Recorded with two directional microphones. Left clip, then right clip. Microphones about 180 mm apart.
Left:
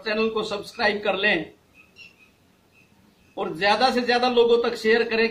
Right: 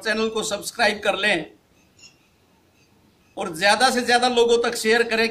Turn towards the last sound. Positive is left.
turn(degrees=-20)  # may be behind; listen again after turning